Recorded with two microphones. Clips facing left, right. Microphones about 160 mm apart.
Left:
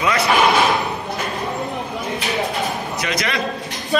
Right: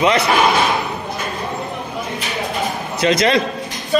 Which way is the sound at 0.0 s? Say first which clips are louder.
Right 4 dB; 20° right (ahead or behind).